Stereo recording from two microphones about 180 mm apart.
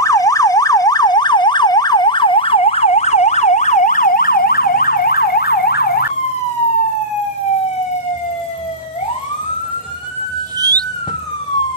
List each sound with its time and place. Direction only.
0.0 s emergency vehicle: 20° left (ahead or behind); by 6.1 s 60° left (ahead or behind)